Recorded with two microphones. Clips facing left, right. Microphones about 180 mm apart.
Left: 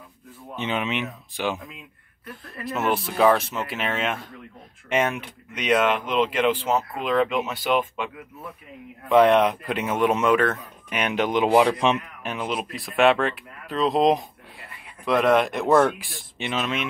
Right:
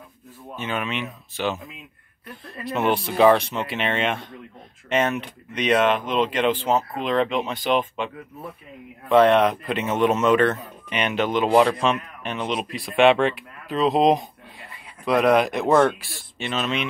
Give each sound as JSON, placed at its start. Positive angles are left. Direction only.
{"t": 0.6, "sound": "speech", "side_deg": 20}
{"t": 2.6, "sound": "speech", "side_deg": 5}
{"t": 9.1, "sound": "speech", "side_deg": 10}